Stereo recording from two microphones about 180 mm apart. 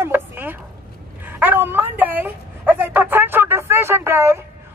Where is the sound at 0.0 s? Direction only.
10° right (ahead or behind).